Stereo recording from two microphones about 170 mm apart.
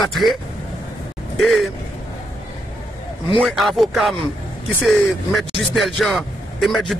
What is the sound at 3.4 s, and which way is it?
Speech, centre (ahead or behind).